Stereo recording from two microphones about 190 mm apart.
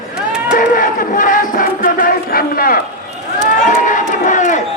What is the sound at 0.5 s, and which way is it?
Crowd, 45° left (ahead or behind).